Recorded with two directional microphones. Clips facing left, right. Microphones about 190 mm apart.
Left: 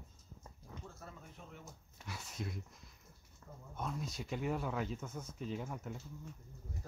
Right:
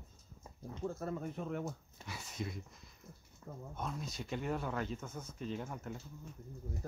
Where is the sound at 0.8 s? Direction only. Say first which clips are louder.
Right 19 dB; 55° right (ahead or behind).